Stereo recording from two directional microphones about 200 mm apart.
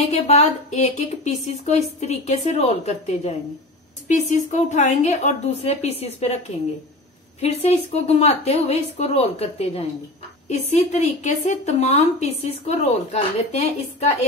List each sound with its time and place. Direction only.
0.1 s a woman's voice: 35° left (ahead or behind)